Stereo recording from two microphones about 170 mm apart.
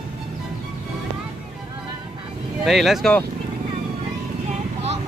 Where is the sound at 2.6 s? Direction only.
Centre (ahead or behind).